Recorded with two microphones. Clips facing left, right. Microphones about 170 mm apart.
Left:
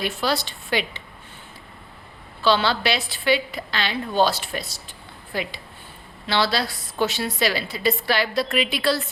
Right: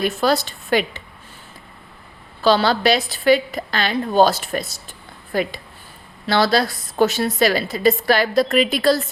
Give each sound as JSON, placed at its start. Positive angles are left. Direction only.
{"t": 0.0, "sound": "a woman's voice", "side_deg": -45}
{"t": 2.4, "sound": "a woman's voice", "side_deg": -40}